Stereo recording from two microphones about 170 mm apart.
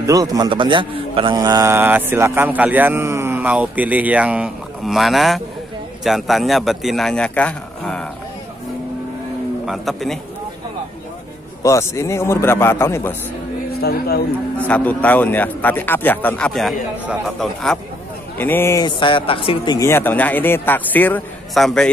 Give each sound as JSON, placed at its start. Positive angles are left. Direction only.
{"t": 0.0, "sound": "a man's voice", "side_deg": -20}
{"t": 9.7, "sound": "a man's voice", "side_deg": 0}
{"t": 11.6, "sound": "speech", "side_deg": 15}
{"t": 13.7, "sound": "speech", "side_deg": 65}
{"t": 14.6, "sound": "a man's voice", "side_deg": 10}
{"t": 18.4, "sound": "speech", "side_deg": 15}
{"t": 18.9, "sound": "a man's voice", "side_deg": 30}